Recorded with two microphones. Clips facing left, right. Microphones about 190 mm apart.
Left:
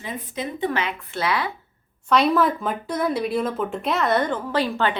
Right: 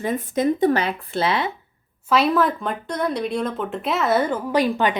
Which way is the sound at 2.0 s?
Centre (ahead or behind).